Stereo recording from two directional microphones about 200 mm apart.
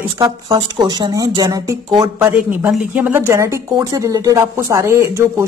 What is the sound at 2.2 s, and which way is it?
Speech, 10° right (ahead or behind).